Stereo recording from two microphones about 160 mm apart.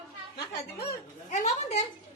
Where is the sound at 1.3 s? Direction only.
45° left (ahead or behind).